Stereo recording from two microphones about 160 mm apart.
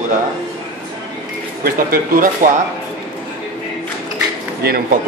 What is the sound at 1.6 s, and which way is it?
Speech, 60° right (ahead or behind).